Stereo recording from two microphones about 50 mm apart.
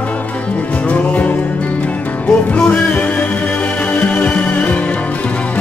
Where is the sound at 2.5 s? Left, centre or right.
Left.